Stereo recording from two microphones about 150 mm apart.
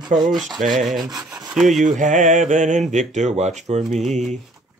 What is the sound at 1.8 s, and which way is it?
Mantra, 60° right (ahead or behind).